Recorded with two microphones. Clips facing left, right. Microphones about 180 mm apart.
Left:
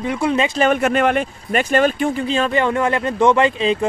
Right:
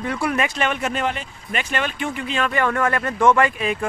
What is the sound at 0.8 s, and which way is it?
Speech, 60° left (ahead or behind).